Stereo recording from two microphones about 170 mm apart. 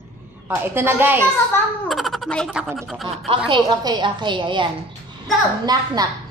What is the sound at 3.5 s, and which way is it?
A woman's voice, 25° right (ahead or behind).